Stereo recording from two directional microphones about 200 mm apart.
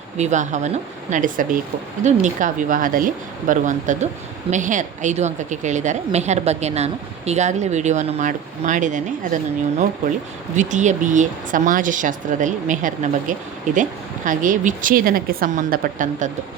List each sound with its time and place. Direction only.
0.2 s a woman's voice: 35° right (ahead or behind)